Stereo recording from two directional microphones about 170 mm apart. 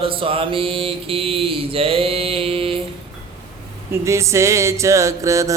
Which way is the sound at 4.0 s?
15° right (ahead or behind).